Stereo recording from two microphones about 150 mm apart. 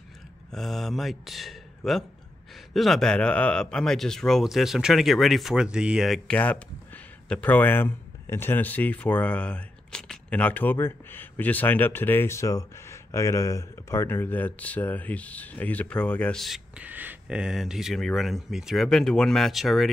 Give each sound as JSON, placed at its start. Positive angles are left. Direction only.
{"t": 0.5, "sound": "speech", "side_deg": 0}